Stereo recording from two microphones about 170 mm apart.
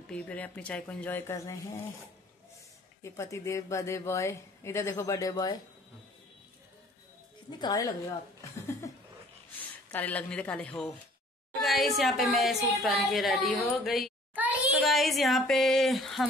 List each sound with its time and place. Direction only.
0.0 s speech: 5° left (ahead or behind)
3.0 s speech: 15° left (ahead or behind)
7.5 s a woman's voice: 25° left (ahead or behind)
9.8 s a child's voice: 10° left (ahead or behind)